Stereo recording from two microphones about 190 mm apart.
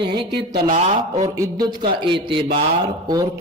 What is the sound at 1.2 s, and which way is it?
Speech, 25° right (ahead or behind).